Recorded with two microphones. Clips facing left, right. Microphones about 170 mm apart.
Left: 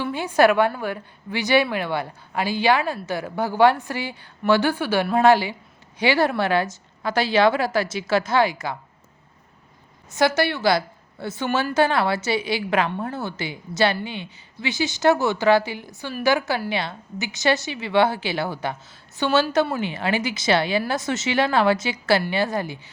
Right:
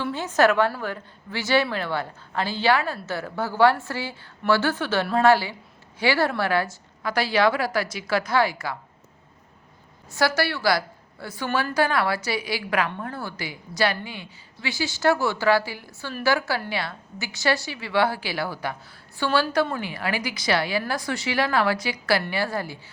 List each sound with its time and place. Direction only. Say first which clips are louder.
0.0 s a woman's voice: left 2 dB; 10° left (ahead or behind)
10.1 s a woman's voice: left 3 dB; 20° left (ahead or behind)